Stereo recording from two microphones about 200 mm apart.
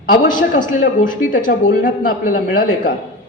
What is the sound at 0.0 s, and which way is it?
A man's voice, 40° left (ahead or behind).